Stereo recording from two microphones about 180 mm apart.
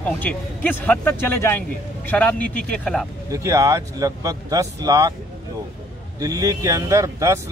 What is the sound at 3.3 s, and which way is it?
Speech, 20° right (ahead or behind).